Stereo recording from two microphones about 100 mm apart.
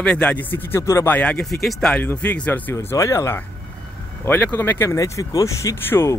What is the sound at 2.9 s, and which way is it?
A man's voice, 30° left (ahead or behind).